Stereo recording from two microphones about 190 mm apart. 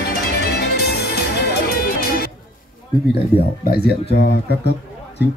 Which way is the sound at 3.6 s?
55° left (ahead or behind).